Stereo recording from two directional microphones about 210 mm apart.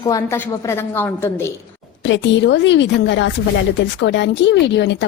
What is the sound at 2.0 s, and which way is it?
A woman's voice, 60° left (ahead or behind).